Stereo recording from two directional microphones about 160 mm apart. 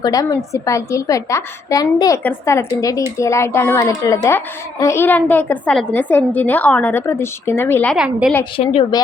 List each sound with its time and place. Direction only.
0.0 s a woman's voice: 25° left (ahead or behind)
7.9 s a woman's voice: 5° right (ahead or behind)
8.5 s a woman's voice: 35° left (ahead or behind)